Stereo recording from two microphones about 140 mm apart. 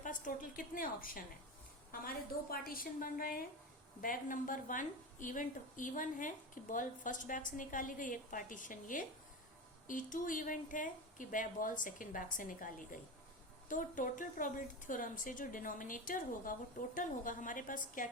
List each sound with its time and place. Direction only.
0.0 s a woman's voice: 70° left (ahead or behind); by 3.4 s 90° left
4.0 s a woman's voice: 75° left (ahead or behind)